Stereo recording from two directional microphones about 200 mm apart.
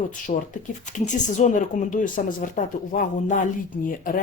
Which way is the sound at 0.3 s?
40° left (ahead or behind).